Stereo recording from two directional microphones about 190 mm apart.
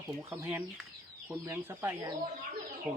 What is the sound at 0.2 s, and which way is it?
Speech, 15° right (ahead or behind).